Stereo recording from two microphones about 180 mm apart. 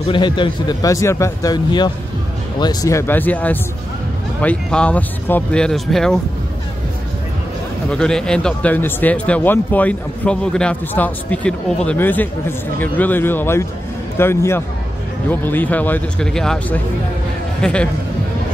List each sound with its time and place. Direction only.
0.0 s speech: 30° left (ahead or behind); by 6.1 s centre (ahead or behind)
7.9 s speech: 5° left (ahead or behind)